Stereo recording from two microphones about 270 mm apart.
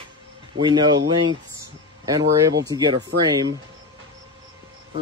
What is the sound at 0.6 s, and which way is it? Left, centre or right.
Speech, centre.